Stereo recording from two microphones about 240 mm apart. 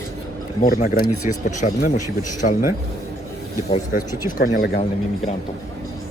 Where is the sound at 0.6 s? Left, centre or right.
Left.